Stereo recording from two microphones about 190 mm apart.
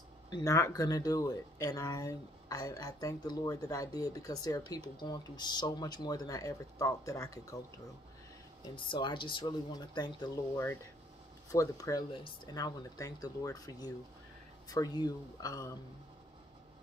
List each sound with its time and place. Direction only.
0.3 s speech: 15° left (ahead or behind)
8.6 s speech: 25° left (ahead or behind)